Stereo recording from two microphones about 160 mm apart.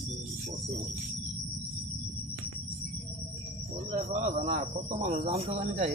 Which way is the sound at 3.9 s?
50° right (ahead or behind).